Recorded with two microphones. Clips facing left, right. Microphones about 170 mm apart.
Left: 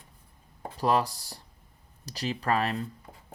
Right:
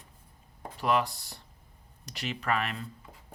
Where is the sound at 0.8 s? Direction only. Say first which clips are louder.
Left 2 dB; 35° left (ahead or behind).